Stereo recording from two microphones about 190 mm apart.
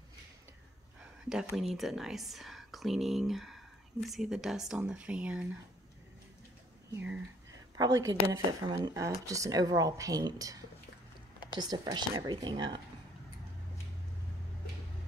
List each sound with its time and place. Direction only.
1.3 s speech: 5° right (ahead or behind)
6.9 s speech: 10° right (ahead or behind)
11.6 s speech: 20° right (ahead or behind)